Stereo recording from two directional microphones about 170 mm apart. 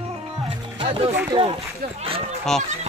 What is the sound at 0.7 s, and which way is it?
Music, 35° right (ahead or behind).